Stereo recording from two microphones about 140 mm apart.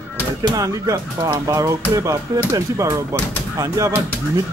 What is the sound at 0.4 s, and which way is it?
Speech, 25° right (ahead or behind).